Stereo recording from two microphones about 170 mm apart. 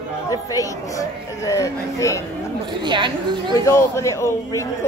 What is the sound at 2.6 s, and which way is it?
Speech, 25° right (ahead or behind).